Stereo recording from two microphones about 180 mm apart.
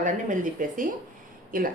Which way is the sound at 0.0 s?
45° right (ahead or behind).